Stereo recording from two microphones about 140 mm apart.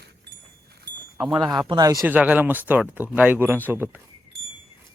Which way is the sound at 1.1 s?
Centre (ahead or behind).